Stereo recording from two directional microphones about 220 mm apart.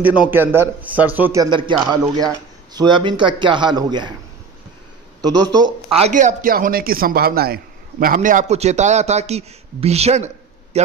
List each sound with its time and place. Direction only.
0.0 s speech: 5° right (ahead or behind)
5.2 s speech: 20° right (ahead or behind)